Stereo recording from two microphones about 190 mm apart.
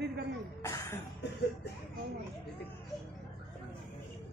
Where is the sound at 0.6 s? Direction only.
15° left (ahead or behind).